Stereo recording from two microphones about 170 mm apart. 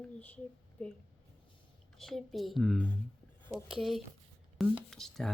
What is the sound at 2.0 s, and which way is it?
Speech, centre (ahead or behind).